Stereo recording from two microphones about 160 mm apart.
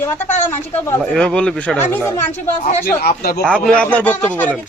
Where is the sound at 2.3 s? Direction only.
55° left (ahead or behind); by 3.4 s 70° left (ahead or behind).